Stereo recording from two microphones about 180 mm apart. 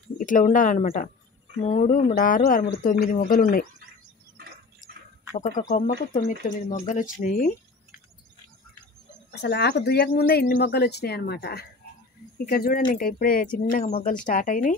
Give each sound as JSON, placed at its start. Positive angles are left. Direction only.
{"t": 0.2, "sound": "speech", "side_deg": 45}
{"t": 5.8, "sound": "speech", "side_deg": 45}
{"t": 9.3, "sound": "speech", "side_deg": 65}